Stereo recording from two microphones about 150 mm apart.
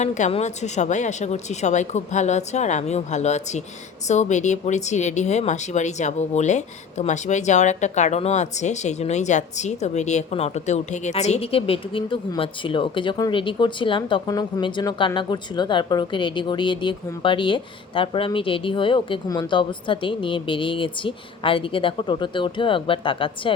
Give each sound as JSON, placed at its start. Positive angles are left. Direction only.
{"t": 0.0, "sound": "speech", "side_deg": 50}